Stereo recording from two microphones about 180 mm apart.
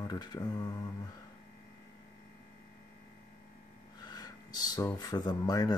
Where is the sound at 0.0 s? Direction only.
20° left (ahead or behind).